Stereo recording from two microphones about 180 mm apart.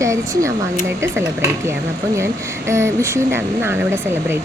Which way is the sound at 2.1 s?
15° right (ahead or behind).